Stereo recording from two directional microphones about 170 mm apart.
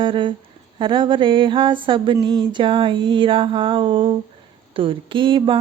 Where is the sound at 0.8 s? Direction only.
30° right (ahead or behind).